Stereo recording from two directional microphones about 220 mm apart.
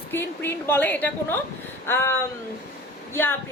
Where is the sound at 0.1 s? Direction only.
10° left (ahead or behind).